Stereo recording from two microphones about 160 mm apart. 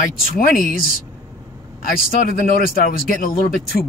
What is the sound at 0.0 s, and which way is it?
Speech, 65° left (ahead or behind).